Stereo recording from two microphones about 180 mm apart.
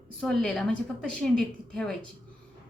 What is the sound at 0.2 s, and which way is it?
A woman's voice, 5° left (ahead or behind).